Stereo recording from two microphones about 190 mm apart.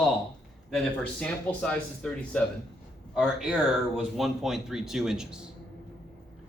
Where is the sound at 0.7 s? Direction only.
5° left (ahead or behind).